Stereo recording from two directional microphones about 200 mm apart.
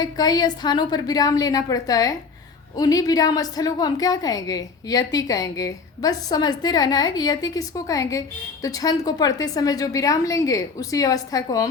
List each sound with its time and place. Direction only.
0.0 s a woman's voice: 20° left (ahead or behind)